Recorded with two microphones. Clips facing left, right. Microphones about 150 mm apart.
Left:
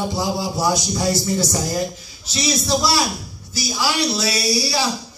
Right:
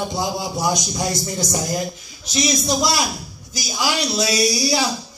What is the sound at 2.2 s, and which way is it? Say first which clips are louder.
Speech: right 2 dB; 15° right (ahead or behind).